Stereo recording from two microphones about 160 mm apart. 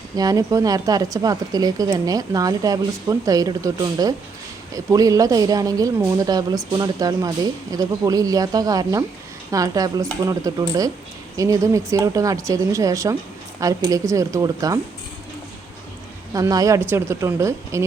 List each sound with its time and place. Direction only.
0.2 s speech: 20° right (ahead or behind)
16.3 s speech: 20° right (ahead or behind)